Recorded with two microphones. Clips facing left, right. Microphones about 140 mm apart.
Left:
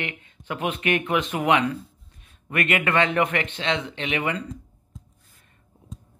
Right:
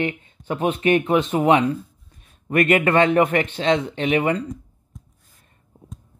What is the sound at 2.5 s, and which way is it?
Speech, 40° right (ahead or behind).